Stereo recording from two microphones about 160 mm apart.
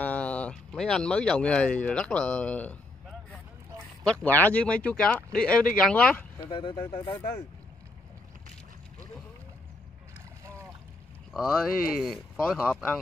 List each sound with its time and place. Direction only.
0.0 s speech: 10° left (ahead or behind)
4.0 s speech: 5° left (ahead or behind)
6.5 s speech: 30° left (ahead or behind)
10.4 s boat: 20° right (ahead or behind)
11.3 s speech: centre (ahead or behind)